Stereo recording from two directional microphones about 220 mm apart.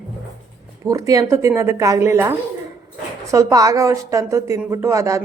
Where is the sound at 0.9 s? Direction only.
15° right (ahead or behind).